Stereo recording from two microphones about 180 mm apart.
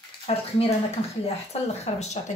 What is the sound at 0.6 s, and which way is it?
A woman's voice, 30° left (ahead or behind).